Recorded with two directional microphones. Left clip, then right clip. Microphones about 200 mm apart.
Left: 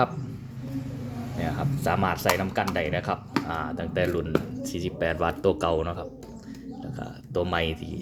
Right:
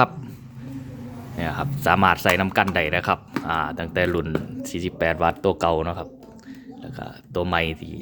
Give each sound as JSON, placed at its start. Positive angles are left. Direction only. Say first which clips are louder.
{"t": 1.4, "sound": "speech", "louder": "right 4 dB", "side_deg": -30}